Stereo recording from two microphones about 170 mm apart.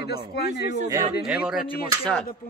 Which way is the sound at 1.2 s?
5° right (ahead or behind).